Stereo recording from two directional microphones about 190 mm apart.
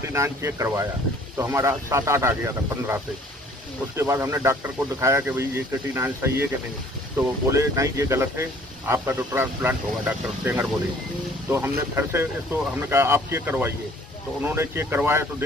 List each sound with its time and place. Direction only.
0.0 s speech: 15° right (ahead or behind)